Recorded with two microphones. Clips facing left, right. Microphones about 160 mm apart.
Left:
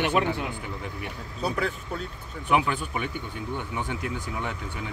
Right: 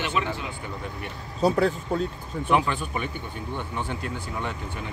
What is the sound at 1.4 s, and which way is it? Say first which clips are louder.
Speech: right 7 dB; 35° right (ahead or behind).